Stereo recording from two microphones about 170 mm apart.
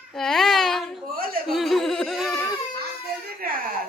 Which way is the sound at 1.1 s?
60° right (ahead or behind).